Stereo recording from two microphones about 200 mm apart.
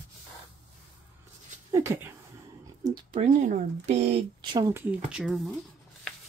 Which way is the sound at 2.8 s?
30° right (ahead or behind).